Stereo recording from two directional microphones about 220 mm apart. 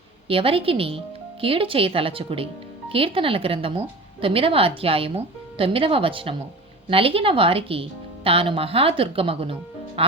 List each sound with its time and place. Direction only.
0.3 s speech: 25° right (ahead or behind)